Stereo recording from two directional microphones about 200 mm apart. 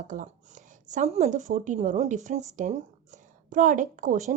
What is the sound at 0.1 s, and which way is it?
Speech, 40° right (ahead or behind).